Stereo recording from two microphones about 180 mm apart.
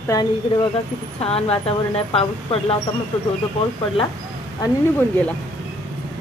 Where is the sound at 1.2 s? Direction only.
35° left (ahead or behind).